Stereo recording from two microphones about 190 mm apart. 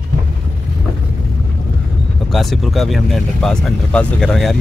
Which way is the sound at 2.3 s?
Centre (ahead or behind).